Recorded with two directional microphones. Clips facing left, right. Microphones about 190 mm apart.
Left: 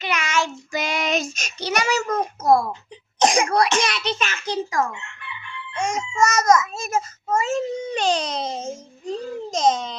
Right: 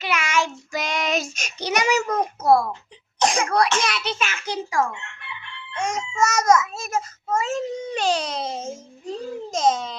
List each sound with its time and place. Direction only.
0.0 s child singing: 5° right (ahead or behind)
0.7 s child singing: centre (ahead or behind)
3.2 s cough: 15° left (ahead or behind)
3.8 s a child's voice: 5° right (ahead or behind)